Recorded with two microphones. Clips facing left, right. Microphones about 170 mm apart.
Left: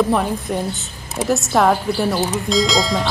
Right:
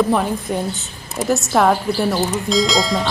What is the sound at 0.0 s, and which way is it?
Speech, centre (ahead or behind).